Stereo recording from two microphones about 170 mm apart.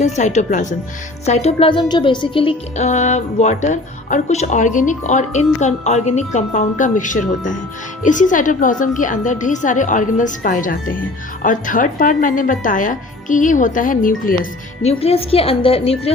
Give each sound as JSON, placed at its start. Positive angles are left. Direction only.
{"t": 0.0, "sound": "speech", "side_deg": 45}
{"t": 14.8, "sound": "speech", "side_deg": 35}